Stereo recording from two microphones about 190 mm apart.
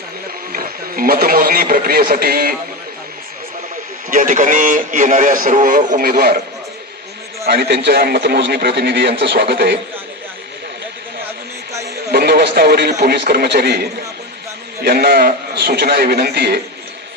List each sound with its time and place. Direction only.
0.5 s speech: 50° right (ahead or behind)
4.1 s speech: 45° right (ahead or behind)
7.4 s speech: 55° right (ahead or behind)
12.1 s speech: 55° right (ahead or behind)